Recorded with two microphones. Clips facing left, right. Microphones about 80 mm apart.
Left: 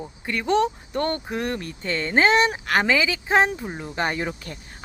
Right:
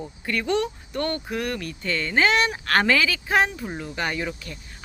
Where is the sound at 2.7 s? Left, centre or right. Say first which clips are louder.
Even; centre.